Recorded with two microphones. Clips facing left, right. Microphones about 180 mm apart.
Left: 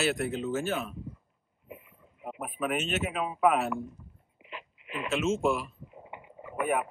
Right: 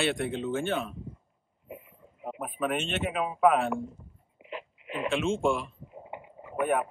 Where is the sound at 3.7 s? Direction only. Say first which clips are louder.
Right 2 dB; 25° right (ahead or behind).